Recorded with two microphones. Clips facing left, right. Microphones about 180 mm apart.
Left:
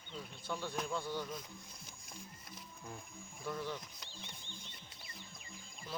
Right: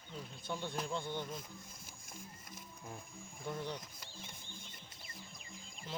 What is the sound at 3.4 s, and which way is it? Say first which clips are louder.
Speech: left 1 dB; 20° right (ahead or behind).